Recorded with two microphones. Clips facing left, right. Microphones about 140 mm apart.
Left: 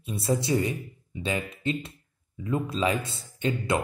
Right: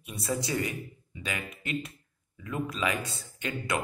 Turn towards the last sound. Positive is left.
turn(degrees=25)  # may be behind; listen again after turning